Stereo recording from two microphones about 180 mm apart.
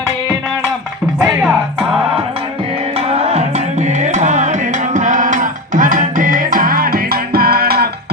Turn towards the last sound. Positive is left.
turn(degrees=-60)  # may be behind; listen again after turning